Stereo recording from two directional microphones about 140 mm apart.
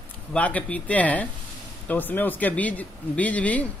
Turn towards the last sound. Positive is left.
turn(degrees=10)  # may be behind; listen again after turning